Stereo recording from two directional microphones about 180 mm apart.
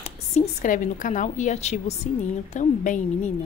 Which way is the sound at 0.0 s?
40° left (ahead or behind).